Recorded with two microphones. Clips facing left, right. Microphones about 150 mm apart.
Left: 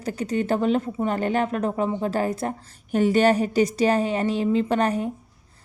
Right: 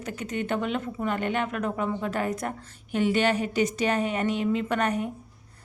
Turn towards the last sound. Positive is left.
turn(degrees=30)  # may be behind; listen again after turning